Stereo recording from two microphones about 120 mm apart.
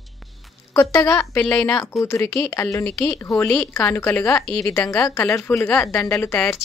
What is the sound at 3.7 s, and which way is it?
A woman's voice, 20° left (ahead or behind).